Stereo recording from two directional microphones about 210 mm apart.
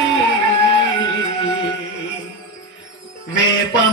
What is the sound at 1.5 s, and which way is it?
Music, 60° left (ahead or behind).